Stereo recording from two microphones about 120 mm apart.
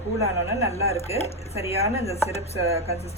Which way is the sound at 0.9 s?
60° left (ahead or behind).